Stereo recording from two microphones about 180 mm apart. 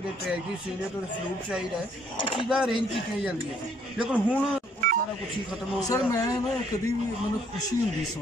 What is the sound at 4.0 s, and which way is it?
Speech, 5° right (ahead or behind).